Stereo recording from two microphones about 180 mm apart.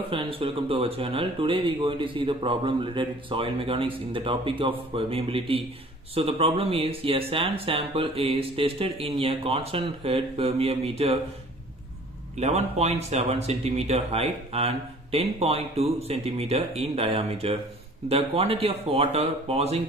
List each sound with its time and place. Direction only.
0.1 s speech: 30° right (ahead or behind)
12.4 s speech: 35° right (ahead or behind)